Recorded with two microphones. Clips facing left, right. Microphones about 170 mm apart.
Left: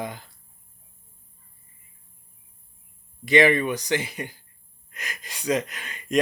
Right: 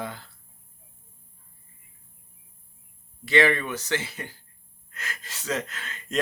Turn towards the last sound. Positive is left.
turn(degrees=15)  # may be behind; listen again after turning